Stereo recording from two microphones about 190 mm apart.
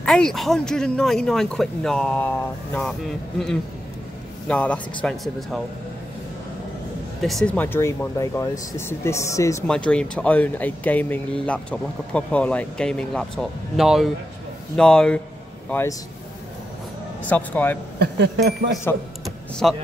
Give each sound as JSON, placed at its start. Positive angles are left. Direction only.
{"t": 0.0, "sound": "speech", "side_deg": 5}
{"t": 4.5, "sound": "speech", "side_deg": 5}
{"t": 7.2, "sound": "speech", "side_deg": 0}
{"t": 9.7, "sound": "speech", "side_deg": 5}
{"t": 17.2, "sound": "speech", "side_deg": 10}
{"t": 17.9, "sound": "speech", "side_deg": -55}
{"t": 18.9, "sound": "speech", "side_deg": 15}
{"t": 19.6, "sound": "speech", "side_deg": 0}